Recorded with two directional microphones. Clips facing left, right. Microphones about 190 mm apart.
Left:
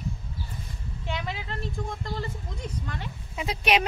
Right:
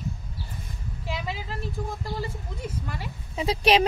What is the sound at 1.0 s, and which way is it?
Speech, centre (ahead or behind).